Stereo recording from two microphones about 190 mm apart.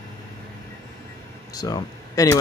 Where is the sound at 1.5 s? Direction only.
20° left (ahead or behind).